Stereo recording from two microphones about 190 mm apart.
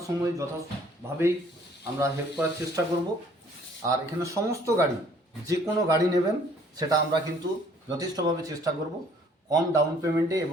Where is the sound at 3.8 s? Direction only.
15° right (ahead or behind).